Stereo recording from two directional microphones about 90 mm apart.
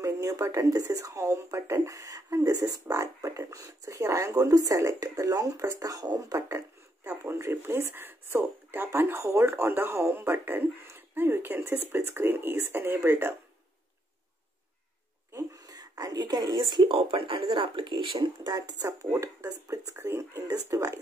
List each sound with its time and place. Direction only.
0.0 s speech: 40° right (ahead or behind)
15.3 s a sound: 40° right (ahead or behind); by 16.9 s 55° right (ahead or behind)
16.9 s speech: 75° right (ahead or behind); by 18.9 s 45° right (ahead or behind)
19.1 s speech: 35° right (ahead or behind)